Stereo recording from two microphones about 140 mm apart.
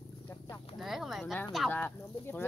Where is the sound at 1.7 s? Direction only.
15° left (ahead or behind).